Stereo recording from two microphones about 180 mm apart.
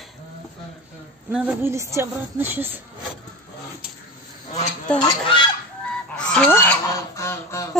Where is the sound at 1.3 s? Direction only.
10° right (ahead or behind).